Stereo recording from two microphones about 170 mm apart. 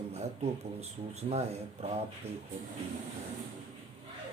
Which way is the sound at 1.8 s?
35° right (ahead or behind).